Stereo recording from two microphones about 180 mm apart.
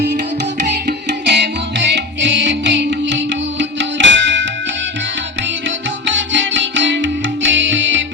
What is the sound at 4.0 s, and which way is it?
Music, 90° right.